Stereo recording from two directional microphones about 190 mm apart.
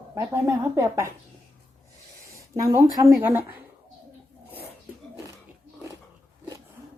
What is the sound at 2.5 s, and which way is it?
Speech, 15° right (ahead or behind).